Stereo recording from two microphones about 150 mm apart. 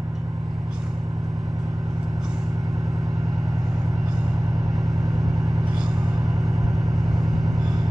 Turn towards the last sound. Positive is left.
turn(degrees=0)  # may be behind; listen again after turning